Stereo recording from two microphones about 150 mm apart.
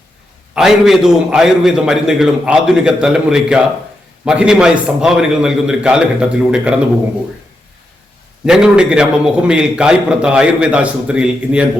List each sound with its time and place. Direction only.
0.5 s a man's voice: centre (ahead or behind)
8.4 s a man's voice: 5° right (ahead or behind)